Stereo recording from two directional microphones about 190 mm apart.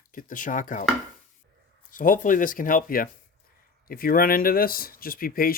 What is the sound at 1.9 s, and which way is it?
Speech, 45° left (ahead or behind).